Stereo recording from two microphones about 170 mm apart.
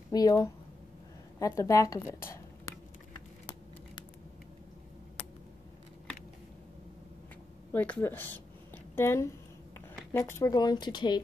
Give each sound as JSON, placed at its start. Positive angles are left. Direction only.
{"t": 0.1, "sound": "speech", "side_deg": 20}
{"t": 7.7, "sound": "a woman's voice", "side_deg": 10}